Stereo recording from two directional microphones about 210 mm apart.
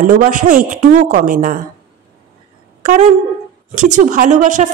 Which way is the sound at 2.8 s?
40° right (ahead or behind).